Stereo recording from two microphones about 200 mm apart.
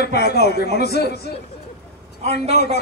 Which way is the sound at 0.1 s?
50° left (ahead or behind).